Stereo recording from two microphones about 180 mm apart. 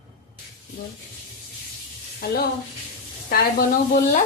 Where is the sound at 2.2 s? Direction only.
60° left (ahead or behind).